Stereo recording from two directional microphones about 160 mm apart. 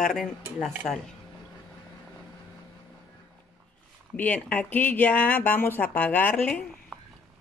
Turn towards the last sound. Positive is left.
turn(degrees=10)  # may be behind; listen again after turning